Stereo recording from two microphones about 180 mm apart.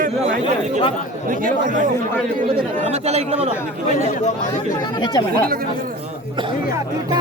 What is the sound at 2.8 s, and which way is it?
Speech, 35° right (ahead or behind).